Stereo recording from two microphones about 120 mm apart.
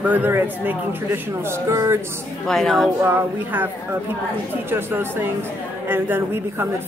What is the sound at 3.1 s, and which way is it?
A woman's voice, 20° right (ahead or behind).